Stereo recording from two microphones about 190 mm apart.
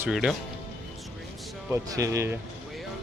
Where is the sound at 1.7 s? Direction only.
15° right (ahead or behind).